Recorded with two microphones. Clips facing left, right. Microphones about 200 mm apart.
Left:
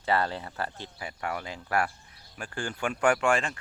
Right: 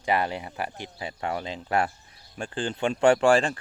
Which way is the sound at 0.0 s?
15° right (ahead or behind).